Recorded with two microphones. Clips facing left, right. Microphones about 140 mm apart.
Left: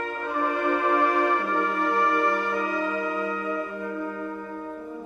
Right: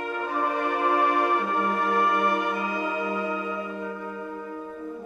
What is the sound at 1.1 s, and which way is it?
Music, 20° right (ahead or behind).